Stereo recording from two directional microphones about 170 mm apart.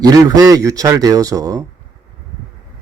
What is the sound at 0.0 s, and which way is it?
Speech, 20° right (ahead or behind).